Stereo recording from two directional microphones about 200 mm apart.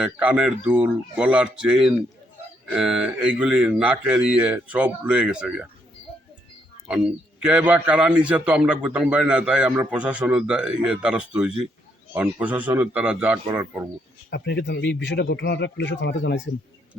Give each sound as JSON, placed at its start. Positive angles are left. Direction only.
{"t": 0.0, "sound": "a man's voice", "side_deg": -5}
{"t": 7.4, "sound": "a man's voice", "side_deg": -5}
{"t": 14.3, "sound": "a man's voice", "side_deg": 60}